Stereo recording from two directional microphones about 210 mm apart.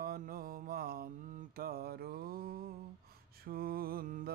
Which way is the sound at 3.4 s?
45° right (ahead or behind).